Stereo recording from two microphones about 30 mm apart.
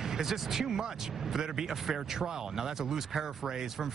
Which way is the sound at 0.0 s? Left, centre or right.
Centre.